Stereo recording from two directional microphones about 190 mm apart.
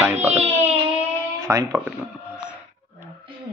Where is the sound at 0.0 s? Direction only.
10° right (ahead or behind).